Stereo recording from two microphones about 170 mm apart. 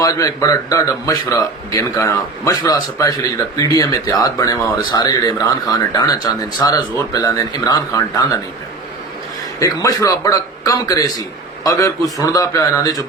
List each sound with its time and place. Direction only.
0.0 s a man's voice: 20° left (ahead or behind)
9.6 s a man's voice: 20° left (ahead or behind)